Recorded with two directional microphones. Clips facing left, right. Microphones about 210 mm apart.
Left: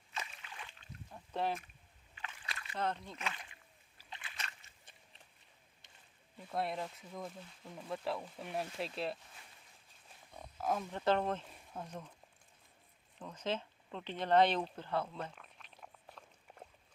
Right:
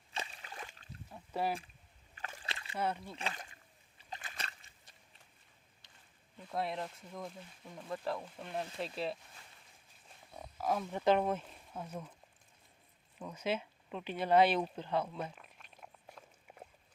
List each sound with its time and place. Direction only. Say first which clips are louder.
0.1 s slosh: right 2 dB; 30° right (ahead or behind)
1.1 s rowboat: right 1 dB; 5° right (ahead or behind)
2.1 s slosh: right 3 dB; 40° right (ahead or behind)
2.5 s a sound: right 2 dB; 30° right (ahead or behind)
2.7 s speech: right 1 dB; 10° right (ahead or behind)
3.2 s speech: right 2 dB; 40° right (ahead or behind)
4.1 s slosh: right 3 dB; 40° right (ahead or behind)
6.5 s speech: even; centre (ahead or behind)
10.3 s wild animals: right 1 dB; 5° right (ahead or behind)
10.9 s speech: right 4 dB; 15° right (ahead or behind)
13.1 s a sound: right 2 dB; 10° right (ahead or behind)